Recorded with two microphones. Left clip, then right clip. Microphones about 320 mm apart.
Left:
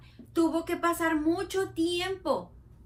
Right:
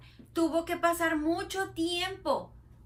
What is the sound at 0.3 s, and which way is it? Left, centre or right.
A woman's voice, centre.